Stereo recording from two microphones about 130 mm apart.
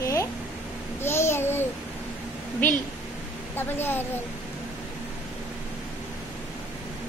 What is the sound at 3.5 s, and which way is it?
Speech, 15° left (ahead or behind).